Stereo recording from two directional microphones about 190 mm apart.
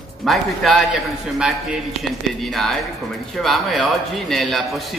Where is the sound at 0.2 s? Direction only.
Centre (ahead or behind).